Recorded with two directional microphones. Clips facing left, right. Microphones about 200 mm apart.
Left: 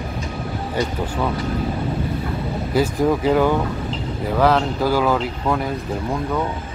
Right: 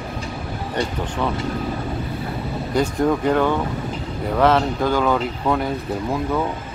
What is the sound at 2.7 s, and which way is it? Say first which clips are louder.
Speech: left 1 dB; 5° left (ahead or behind).